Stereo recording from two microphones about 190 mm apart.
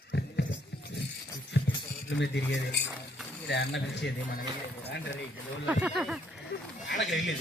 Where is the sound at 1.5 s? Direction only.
70° left (ahead or behind).